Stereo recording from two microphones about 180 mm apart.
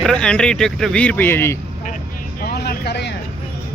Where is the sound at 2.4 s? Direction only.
60° left (ahead or behind).